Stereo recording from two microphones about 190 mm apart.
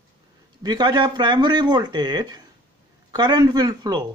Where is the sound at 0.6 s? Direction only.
20° right (ahead or behind).